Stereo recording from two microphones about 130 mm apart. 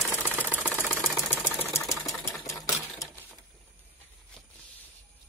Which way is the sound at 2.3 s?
25° left (ahead or behind).